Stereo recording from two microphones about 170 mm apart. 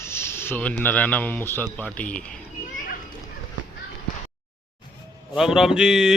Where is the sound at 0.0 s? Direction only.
15° left (ahead or behind).